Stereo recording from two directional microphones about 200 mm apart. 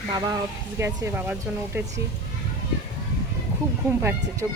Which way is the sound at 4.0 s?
10° right (ahead or behind).